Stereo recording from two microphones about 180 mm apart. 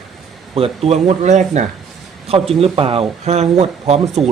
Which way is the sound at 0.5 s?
35° right (ahead or behind).